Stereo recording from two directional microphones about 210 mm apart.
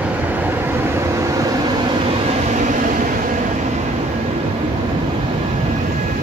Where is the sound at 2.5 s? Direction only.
35° right (ahead or behind).